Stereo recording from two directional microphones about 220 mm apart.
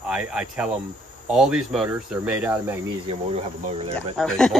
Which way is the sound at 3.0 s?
25° right (ahead or behind).